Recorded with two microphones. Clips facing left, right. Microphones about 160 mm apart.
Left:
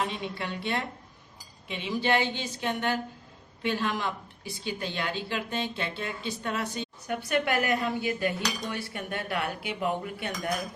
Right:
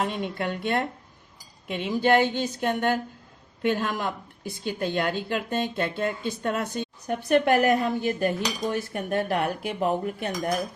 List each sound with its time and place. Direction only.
0.0 s speech: 50° right (ahead or behind)